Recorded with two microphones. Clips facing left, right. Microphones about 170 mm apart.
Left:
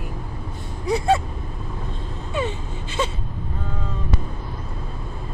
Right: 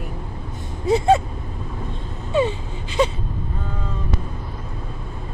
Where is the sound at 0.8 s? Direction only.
25° right (ahead or behind).